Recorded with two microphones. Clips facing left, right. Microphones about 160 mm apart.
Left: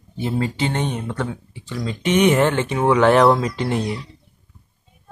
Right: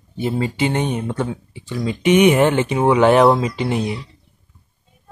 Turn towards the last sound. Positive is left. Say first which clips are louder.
# right 1 dB
turn(degrees=-5)  # may be behind; listen again after turning